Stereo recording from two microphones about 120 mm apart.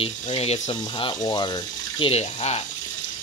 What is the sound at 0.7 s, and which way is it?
Speech, 45° left (ahead or behind).